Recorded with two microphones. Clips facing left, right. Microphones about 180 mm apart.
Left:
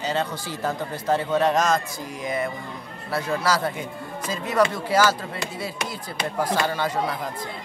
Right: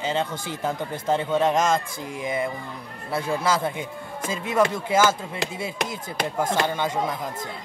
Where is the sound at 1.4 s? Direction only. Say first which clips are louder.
Even; 25° right (ahead or behind).